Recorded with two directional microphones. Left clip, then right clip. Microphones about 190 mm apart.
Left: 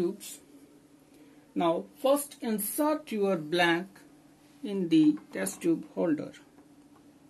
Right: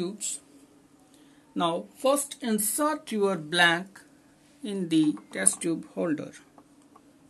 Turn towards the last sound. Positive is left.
turn(degrees=-25)  # may be behind; listen again after turning